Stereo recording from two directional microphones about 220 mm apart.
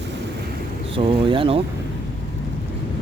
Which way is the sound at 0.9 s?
25° right (ahead or behind).